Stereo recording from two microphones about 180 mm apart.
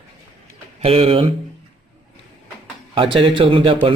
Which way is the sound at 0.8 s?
30° right (ahead or behind).